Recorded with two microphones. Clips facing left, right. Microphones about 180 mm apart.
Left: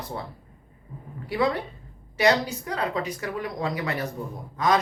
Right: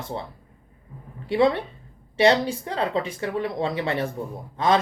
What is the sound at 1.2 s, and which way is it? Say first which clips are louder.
A woman's voice: right 5 dB; 25° right (ahead or behind).